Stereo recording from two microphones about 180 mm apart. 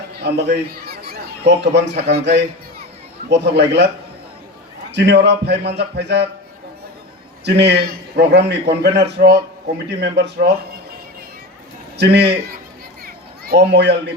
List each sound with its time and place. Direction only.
0.1 s a sound: 65° right (ahead or behind)
2.0 s a man's voice: 70° right (ahead or behind)
4.9 s a man's voice: 70° right (ahead or behind)
7.4 s a man's voice: 70° right (ahead or behind)
11.9 s a man's voice: 70° right (ahead or behind)
13.1 s children playing: 60° right (ahead or behind)